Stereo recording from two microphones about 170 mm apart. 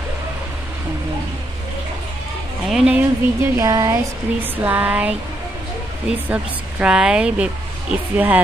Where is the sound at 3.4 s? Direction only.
20° right (ahead or behind).